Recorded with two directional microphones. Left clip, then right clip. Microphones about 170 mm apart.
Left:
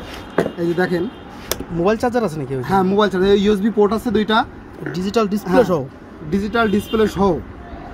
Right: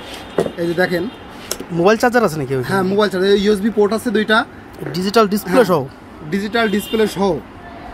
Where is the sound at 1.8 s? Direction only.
Centre (ahead or behind).